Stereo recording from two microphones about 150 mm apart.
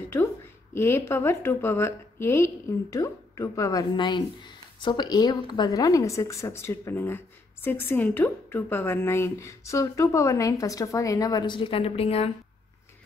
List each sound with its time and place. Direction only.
0.7 s a woman's voice: 15° left (ahead or behind); by 12.3 s 40° left (ahead or behind)